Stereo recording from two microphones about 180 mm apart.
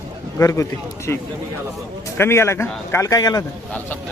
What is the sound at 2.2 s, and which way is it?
Speech, 15° left (ahead or behind).